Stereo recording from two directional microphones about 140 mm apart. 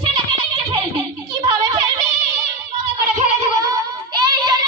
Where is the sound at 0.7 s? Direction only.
35° right (ahead or behind).